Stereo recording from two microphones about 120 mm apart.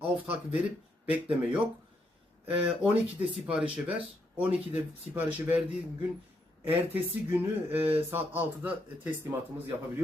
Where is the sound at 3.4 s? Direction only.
10° right (ahead or behind).